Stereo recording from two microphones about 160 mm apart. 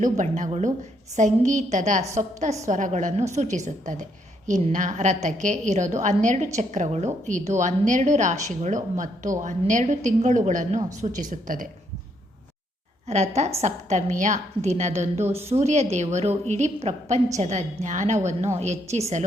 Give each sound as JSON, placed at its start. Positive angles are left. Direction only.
{"t": 0.0, "sound": "a woman's voice", "side_deg": -50}
{"t": 13.1, "sound": "a woman's voice", "side_deg": -45}